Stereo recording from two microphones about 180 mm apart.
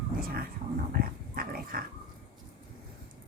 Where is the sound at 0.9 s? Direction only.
55° right (ahead or behind).